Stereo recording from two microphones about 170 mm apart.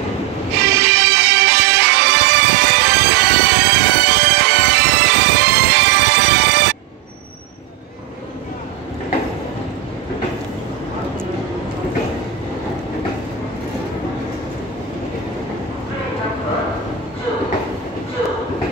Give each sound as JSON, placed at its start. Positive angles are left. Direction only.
{"t": 0.7, "sound": "music", "side_deg": -75}